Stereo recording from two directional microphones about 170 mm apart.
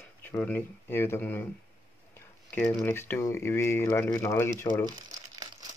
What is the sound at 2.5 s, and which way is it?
Speech, 15° left (ahead or behind).